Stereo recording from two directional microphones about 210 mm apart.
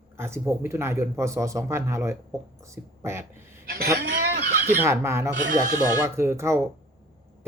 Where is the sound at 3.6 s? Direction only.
45° right (ahead or behind).